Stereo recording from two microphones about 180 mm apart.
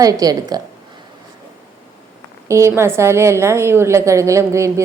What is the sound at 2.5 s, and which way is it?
A woman's voice, 15° right (ahead or behind).